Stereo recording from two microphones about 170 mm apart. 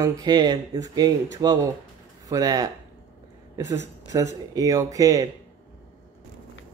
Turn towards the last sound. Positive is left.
turn(degrees=-20)  # may be behind; listen again after turning